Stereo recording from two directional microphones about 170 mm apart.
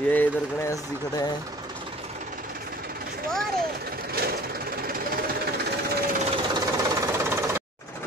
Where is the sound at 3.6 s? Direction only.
65° right (ahead or behind).